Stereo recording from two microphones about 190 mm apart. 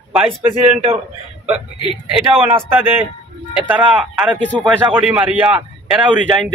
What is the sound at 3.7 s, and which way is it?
A man's voice, 5° right (ahead or behind).